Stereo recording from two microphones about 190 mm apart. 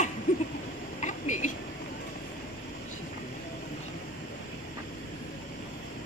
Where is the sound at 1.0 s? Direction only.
40° left (ahead or behind).